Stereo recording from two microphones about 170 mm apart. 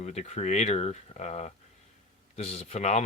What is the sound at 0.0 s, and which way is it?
Speech, 40° left (ahead or behind).